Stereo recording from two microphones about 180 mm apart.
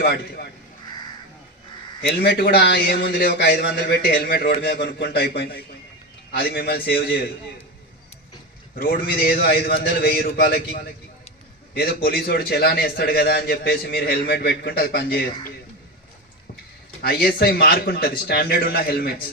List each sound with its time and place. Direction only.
2.0 s a man's voice: 60° left (ahead or behind)
8.7 s a man's voice: 55° left (ahead or behind)
17.0 s a man's voice: 60° left (ahead or behind)